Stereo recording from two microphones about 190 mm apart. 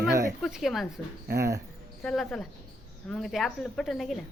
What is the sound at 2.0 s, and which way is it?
A woman's voice, 5° left (ahead or behind).